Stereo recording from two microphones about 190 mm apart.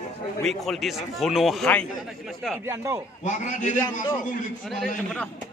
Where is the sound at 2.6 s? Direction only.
15° right (ahead or behind).